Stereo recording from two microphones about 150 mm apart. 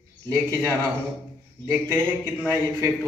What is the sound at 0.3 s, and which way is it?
A man's voice, 20° right (ahead or behind).